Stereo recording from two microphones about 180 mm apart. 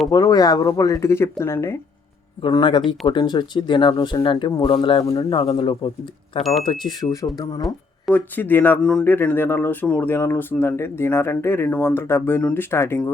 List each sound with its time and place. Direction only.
0.1 s speech: 20° left (ahead or behind)
2.4 s speech: 25° left (ahead or behind)
6.4 s speech: centre (ahead or behind)
6.7 s speech: 25° left (ahead or behind)
7.6 s a sound: centre (ahead or behind)
8.4 s speech: 10° left (ahead or behind)